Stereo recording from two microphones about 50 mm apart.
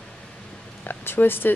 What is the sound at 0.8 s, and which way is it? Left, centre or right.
Speech, left.